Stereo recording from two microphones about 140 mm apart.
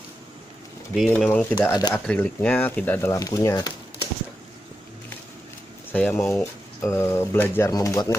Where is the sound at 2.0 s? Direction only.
10° left (ahead or behind); by 3.7 s 25° left (ahead or behind).